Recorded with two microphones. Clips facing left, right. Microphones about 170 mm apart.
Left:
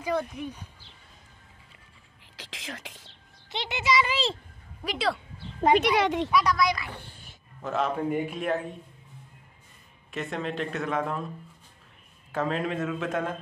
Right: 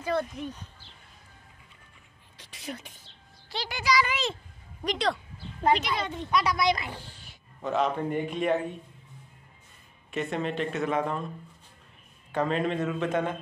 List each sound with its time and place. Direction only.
0.0 s speech: 10° left (ahead or behind)
2.3 s speech: 90° left
3.4 s speech: 20° left (ahead or behind)
4.8 s speech: 5° left (ahead or behind)
5.8 s speech: 80° left
6.5 s a woman's voice: 25° right (ahead or behind)
7.0 s a sound: 55° left (ahead or behind)
7.6 s speech: centre (ahead or behind)
10.1 s speech: centre (ahead or behind)
12.3 s speech: centre (ahead or behind)